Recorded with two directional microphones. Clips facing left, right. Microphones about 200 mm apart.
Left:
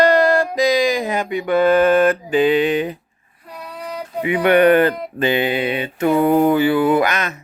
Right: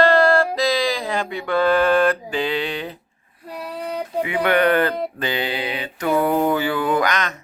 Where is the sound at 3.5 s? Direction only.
30° right (ahead or behind).